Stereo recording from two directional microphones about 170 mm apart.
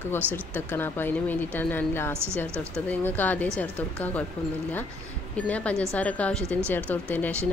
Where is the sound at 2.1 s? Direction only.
15° right (ahead or behind).